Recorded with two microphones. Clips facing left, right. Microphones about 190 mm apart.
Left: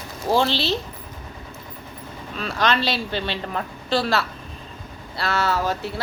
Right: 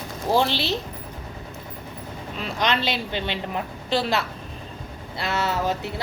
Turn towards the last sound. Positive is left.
turn(degrees=-20)  # may be behind; listen again after turning